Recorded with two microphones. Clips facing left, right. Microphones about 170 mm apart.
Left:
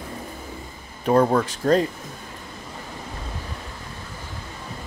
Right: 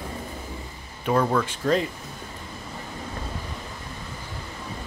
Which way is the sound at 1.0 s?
35° left (ahead or behind).